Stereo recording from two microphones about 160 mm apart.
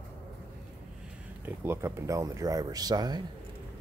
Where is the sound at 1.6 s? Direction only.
15° right (ahead or behind).